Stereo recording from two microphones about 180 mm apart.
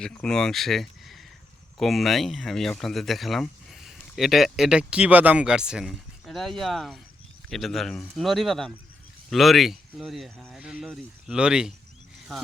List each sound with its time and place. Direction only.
0.0 s speech: 5° left (ahead or behind)